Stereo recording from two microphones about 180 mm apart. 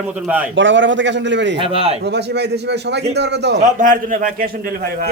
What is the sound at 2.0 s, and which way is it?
A man's voice, 70° right (ahead or behind).